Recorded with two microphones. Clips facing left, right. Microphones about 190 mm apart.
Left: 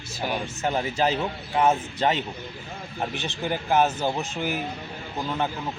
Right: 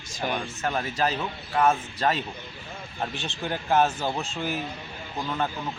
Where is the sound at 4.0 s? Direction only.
20° left (ahead or behind).